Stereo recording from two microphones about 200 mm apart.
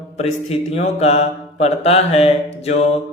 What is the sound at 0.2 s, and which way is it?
Mantra, 30° left (ahead or behind).